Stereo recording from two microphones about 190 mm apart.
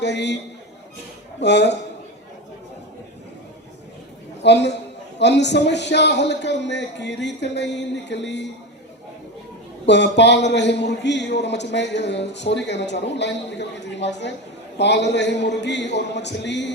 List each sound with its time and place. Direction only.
0.0 s speech: 65° left (ahead or behind)
1.4 s speech: 65° left (ahead or behind)
4.4 s speech: 65° left (ahead or behind)
9.8 s a man's voice: 65° left (ahead or behind)